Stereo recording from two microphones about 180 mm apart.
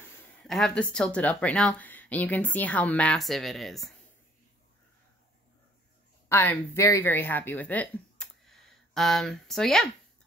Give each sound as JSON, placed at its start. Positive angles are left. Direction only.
{"t": 0.3, "sound": "speech", "side_deg": 5}
{"t": 6.2, "sound": "speech", "side_deg": 15}